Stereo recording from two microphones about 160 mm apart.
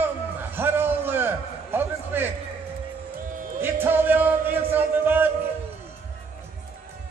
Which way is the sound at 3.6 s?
10° right (ahead or behind).